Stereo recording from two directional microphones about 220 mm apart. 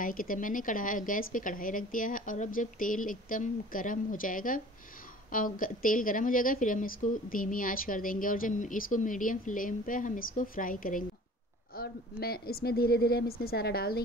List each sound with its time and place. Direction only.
0.0 s a woman's voice: 40° left (ahead or behind)